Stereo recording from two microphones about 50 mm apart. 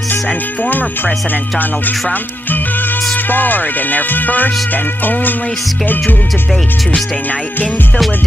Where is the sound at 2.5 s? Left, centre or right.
Left.